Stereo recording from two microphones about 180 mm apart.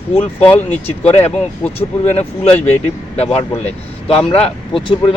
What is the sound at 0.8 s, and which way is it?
Speech, 35° left (ahead or behind).